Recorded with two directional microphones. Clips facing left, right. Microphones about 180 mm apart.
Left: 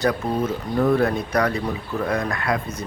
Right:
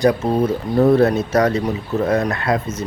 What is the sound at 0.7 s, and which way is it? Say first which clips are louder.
Speech: right 6 dB; 40° right (ahead or behind).